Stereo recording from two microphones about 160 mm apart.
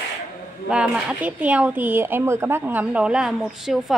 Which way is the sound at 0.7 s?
5° right (ahead or behind).